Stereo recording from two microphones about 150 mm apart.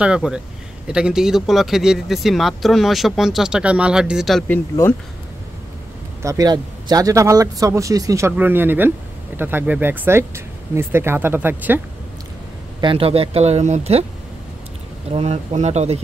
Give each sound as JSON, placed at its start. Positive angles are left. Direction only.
{"t": 0.0, "sound": "speech", "side_deg": -5}
{"t": 4.5, "sound": "speech", "side_deg": 15}
{"t": 6.2, "sound": "speech", "side_deg": -25}
{"t": 12.8, "sound": "speech", "side_deg": -40}
{"t": 15.0, "sound": "speech", "side_deg": -45}